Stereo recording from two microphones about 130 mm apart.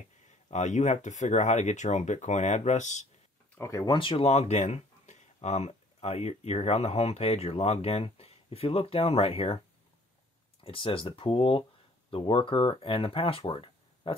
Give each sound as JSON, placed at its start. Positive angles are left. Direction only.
{"t": 0.5, "sound": "speech", "side_deg": 65}
{"t": 3.5, "sound": "speech", "side_deg": 20}
{"t": 3.8, "sound": "speech", "side_deg": 35}
{"t": 4.2, "sound": "speech", "side_deg": 55}
{"t": 10.6, "sound": "speech", "side_deg": 45}